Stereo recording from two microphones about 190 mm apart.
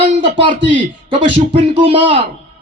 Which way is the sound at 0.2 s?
25° right (ahead or behind).